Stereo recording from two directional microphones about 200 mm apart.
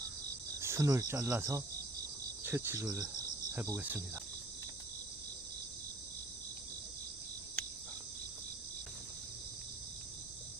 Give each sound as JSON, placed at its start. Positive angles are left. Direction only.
{"t": 0.6, "sound": "cricket", "side_deg": -15}